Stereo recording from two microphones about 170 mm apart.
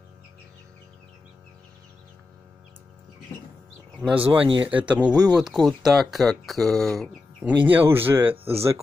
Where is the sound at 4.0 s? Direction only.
10° right (ahead or behind).